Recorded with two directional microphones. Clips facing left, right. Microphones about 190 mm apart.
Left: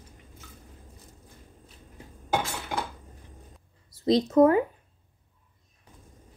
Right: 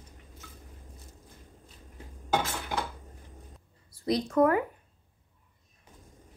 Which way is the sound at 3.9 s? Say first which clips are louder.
Left 5 dB; 25° left (ahead or behind).